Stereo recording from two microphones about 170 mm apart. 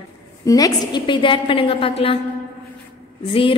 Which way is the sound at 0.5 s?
20° left (ahead or behind).